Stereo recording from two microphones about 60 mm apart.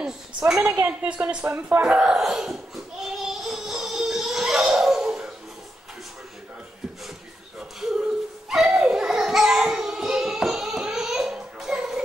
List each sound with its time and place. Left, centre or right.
0.0 s a woman's voice: centre
0.7 s a woman's voice: right
1.1 s speech: centre
1.8 s laughter: centre
8.5 s a sound: centre